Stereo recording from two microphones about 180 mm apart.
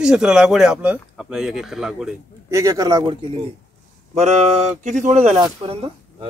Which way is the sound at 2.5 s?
15° right (ahead or behind).